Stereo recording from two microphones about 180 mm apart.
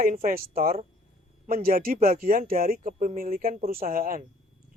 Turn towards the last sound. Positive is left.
turn(degrees=-50)  # may be behind; listen again after turning